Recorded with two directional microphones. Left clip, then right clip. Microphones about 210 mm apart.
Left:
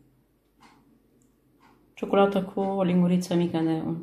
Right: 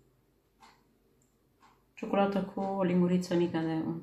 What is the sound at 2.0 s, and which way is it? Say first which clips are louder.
Speech: left 7 dB; 40° left (ahead or behind).